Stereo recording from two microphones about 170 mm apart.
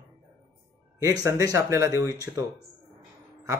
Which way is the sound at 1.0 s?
20° right (ahead or behind).